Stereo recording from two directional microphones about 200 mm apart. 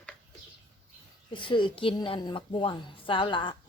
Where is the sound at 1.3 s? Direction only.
25° left (ahead or behind).